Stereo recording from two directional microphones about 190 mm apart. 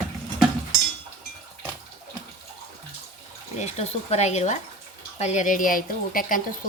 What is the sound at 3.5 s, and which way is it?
A woman's voice, 35° left (ahead or behind).